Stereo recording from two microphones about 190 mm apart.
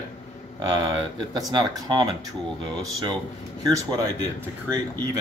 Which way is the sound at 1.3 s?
20° right (ahead or behind).